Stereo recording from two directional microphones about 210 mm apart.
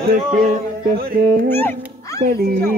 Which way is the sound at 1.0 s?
45° right (ahead or behind).